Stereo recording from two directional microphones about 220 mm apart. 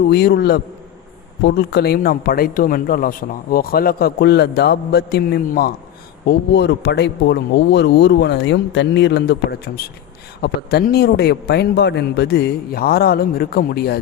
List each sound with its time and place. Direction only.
0.1 s speech: 50° left (ahead or behind)